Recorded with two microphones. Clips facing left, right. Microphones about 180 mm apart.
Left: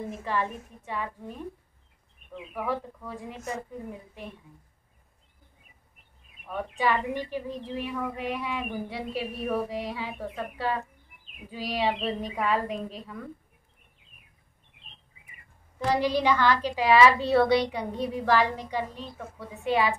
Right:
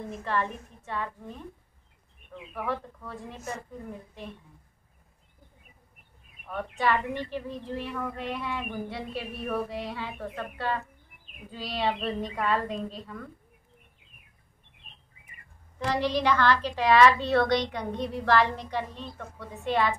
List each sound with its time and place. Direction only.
0.0 s a woman's voice: 10° left (ahead or behind)
2.5 s a woman's voice: 10° left (ahead or behind)
6.4 s a woman's voice: 15° left (ahead or behind)
16.0 s a woman's voice: 10° left (ahead or behind)